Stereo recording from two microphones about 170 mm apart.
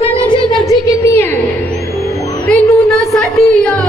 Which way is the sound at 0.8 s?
15° left (ahead or behind).